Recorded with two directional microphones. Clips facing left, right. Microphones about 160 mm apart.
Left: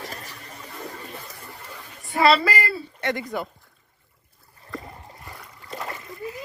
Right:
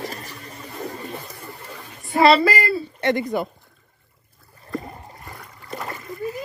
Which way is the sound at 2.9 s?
30° right (ahead or behind).